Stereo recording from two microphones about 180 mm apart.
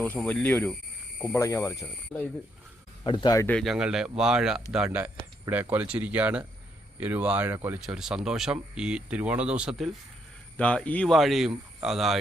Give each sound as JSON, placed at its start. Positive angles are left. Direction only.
{"t": 0.0, "sound": "speech", "side_deg": 10}
{"t": 2.1, "sound": "speech", "side_deg": 0}
{"t": 3.0, "sound": "speech", "side_deg": 25}
{"t": 3.4, "sound": "speech", "side_deg": 5}